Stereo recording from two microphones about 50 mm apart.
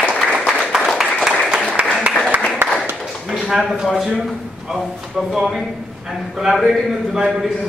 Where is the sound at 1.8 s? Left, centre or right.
Right.